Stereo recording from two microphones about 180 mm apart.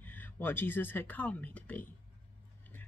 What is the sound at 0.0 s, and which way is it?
Speech, 10° left (ahead or behind).